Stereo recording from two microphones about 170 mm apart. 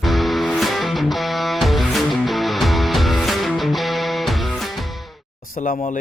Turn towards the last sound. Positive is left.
turn(degrees=55)  # may be behind; listen again after turning